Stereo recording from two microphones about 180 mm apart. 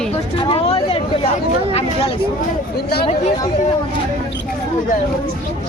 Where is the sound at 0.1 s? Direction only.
30° left (ahead or behind).